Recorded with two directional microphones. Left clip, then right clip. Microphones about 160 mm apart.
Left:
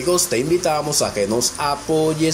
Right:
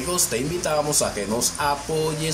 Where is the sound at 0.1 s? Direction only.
40° left (ahead or behind).